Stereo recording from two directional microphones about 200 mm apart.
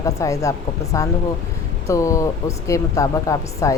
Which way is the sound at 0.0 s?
15° left (ahead or behind).